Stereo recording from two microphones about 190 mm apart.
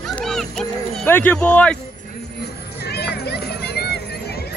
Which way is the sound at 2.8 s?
60° left (ahead or behind).